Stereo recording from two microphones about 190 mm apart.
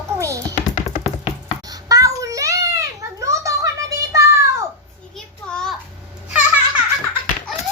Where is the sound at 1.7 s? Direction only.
20° right (ahead or behind).